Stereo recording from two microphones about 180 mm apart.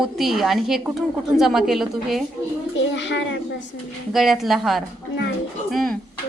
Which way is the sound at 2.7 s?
90° left.